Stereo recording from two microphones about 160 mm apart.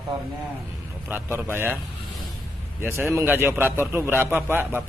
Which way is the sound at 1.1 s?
15° right (ahead or behind).